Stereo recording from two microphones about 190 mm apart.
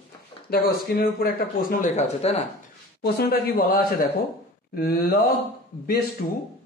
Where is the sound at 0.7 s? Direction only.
55° left (ahead or behind); by 2.4 s 35° left (ahead or behind).